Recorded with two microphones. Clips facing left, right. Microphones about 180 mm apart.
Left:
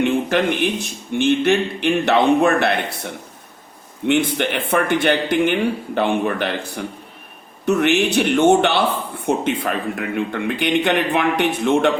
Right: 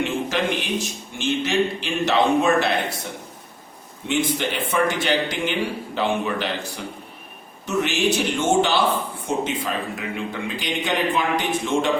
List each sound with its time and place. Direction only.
0.0 s speech: 60° left (ahead or behind)
4.0 s speech: 60° left (ahead or behind)